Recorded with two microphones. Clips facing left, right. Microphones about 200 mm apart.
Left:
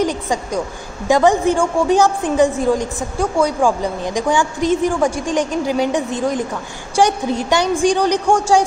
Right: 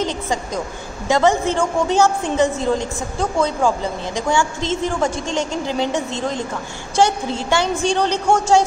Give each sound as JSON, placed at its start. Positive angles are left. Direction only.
{"t": 0.0, "sound": "a woman's voice", "side_deg": 10}